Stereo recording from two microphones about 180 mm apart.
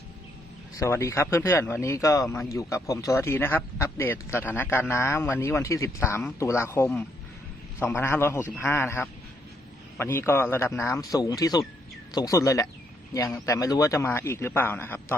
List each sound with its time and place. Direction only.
0.8 s speech: 15° left (ahead or behind)